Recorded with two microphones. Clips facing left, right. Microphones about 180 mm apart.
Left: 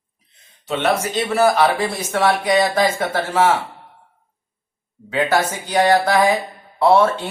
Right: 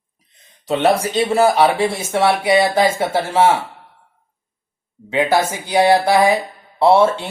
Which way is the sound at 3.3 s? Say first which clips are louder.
Right 2 dB; 30° right (ahead or behind).